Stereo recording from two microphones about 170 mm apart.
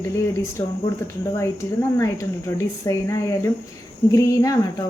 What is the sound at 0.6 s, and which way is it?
Speech, 15° left (ahead or behind).